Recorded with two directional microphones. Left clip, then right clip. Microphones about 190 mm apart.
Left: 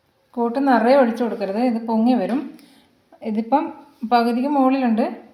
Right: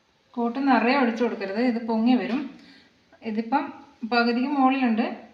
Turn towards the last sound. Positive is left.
turn(degrees=40)  # may be behind; listen again after turning